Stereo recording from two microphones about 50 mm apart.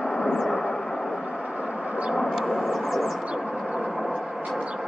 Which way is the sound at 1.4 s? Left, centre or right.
Centre.